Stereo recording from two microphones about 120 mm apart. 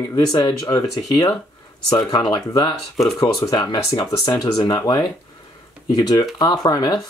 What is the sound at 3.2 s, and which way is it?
Speech, 35° left (ahead or behind).